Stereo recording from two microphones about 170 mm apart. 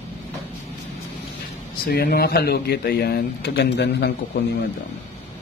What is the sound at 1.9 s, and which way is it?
Speech, 65° left (ahead or behind).